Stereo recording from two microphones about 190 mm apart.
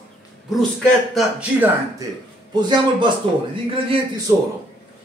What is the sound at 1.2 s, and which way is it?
Speech, 5° right (ahead or behind).